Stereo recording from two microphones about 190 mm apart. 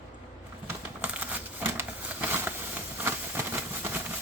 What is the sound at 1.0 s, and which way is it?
Crumpling, 10° right (ahead or behind).